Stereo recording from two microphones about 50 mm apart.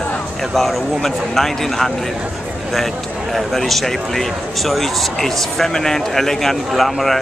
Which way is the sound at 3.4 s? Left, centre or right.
Centre.